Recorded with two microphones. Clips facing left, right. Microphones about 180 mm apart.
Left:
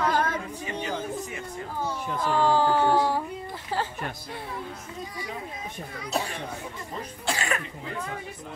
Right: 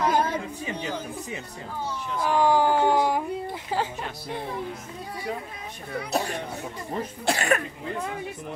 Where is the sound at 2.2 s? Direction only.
15° right (ahead or behind).